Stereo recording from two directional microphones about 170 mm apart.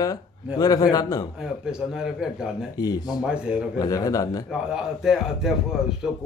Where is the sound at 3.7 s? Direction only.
20° left (ahead or behind).